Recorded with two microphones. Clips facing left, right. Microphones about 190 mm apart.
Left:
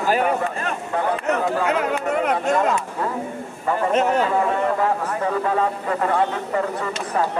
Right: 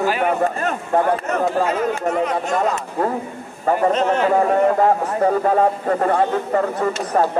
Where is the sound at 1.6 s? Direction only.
65° left (ahead or behind).